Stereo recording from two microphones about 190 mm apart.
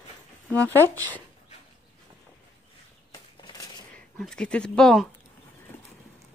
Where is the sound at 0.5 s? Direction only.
5° left (ahead or behind).